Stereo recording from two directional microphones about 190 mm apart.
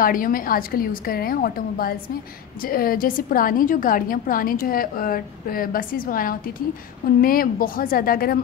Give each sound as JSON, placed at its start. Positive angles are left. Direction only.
{"t": 0.0, "sound": "a woman's voice", "side_deg": 45}